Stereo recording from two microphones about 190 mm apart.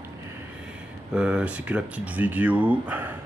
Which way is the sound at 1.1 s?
5° right (ahead or behind).